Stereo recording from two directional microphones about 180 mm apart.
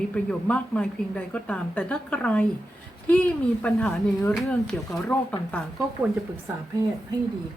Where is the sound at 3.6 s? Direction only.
5° left (ahead or behind).